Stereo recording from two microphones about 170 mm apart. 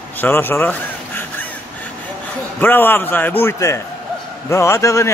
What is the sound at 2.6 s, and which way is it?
A man's voice, 10° left (ahead or behind).